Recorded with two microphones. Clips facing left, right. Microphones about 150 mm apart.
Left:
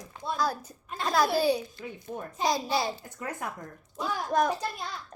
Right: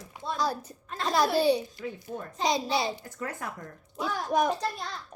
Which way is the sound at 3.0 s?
20° left (ahead or behind).